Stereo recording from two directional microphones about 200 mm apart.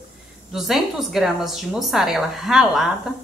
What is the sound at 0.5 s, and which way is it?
A woman's voice, centre (ahead or behind).